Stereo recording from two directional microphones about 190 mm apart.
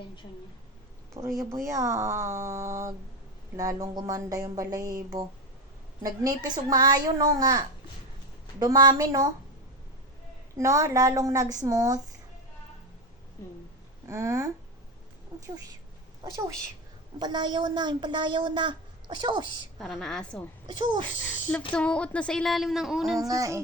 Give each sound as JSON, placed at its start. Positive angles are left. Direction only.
{"t": 1.2, "sound": "a woman's voice", "side_deg": -15}
{"t": 10.6, "sound": "speech", "side_deg": -15}
{"t": 14.1, "sound": "a woman's voice", "side_deg": -15}
{"t": 19.8, "sound": "speech", "side_deg": 0}
{"t": 21.7, "sound": "speech", "side_deg": 5}
{"t": 23.1, "sound": "speech", "side_deg": -15}